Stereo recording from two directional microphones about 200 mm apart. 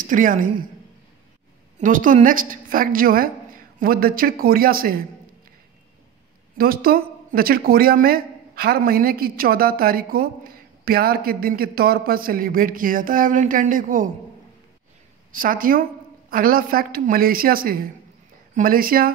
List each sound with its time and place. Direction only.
0.0 s a woman's voice: 40° right (ahead or behind)
1.8 s speech: 40° right (ahead or behind)
6.6 s speech: 50° right (ahead or behind)
15.3 s speech: 45° right (ahead or behind)